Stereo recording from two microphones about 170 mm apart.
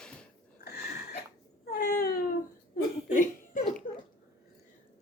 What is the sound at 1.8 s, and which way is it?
Wail, 60° left (ahead or behind).